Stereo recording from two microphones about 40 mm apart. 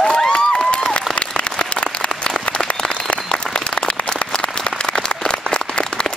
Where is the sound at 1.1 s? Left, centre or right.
Left.